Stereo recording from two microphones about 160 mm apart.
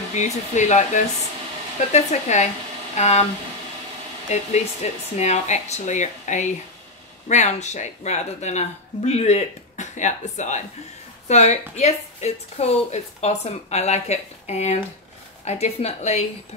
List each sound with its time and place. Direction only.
0.2 s a woman's voice: 45° left (ahead or behind)
4.3 s a woman's voice: 45° left (ahead or behind)